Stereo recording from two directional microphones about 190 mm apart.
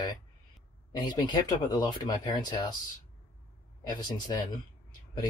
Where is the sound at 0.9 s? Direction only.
20° left (ahead or behind).